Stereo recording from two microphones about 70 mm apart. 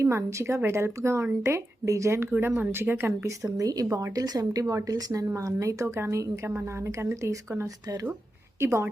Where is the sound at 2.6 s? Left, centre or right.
Right.